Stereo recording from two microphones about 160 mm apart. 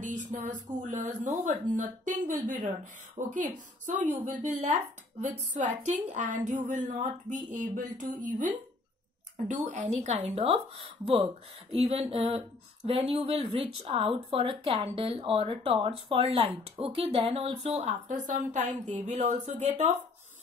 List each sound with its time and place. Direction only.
0.1 s a woman's voice: 50° right (ahead or behind)